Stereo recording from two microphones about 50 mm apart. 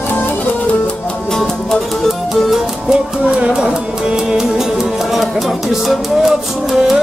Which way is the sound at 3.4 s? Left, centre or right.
Centre.